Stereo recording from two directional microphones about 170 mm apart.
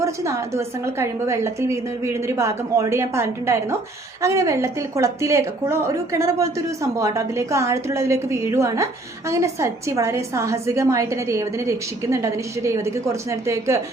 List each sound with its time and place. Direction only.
0.0 s a woman's voice: 15° right (ahead or behind)